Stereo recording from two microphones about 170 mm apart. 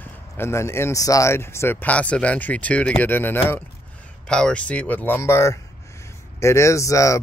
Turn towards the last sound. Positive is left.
turn(degrees=20)  # may be behind; listen again after turning